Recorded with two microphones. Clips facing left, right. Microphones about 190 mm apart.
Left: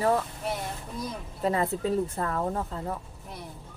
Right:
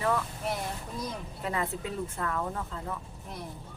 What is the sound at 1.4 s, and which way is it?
Speech, 40° left (ahead or behind).